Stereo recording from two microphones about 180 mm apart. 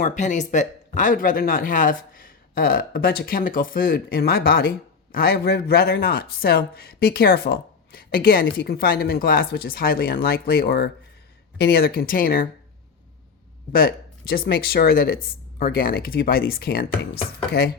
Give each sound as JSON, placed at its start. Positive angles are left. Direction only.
{"t": 0.0, "sound": "speech", "side_deg": 45}
{"t": 13.7, "sound": "speech", "side_deg": 55}